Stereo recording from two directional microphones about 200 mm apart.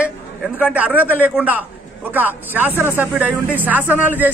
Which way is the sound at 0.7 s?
5° right (ahead or behind).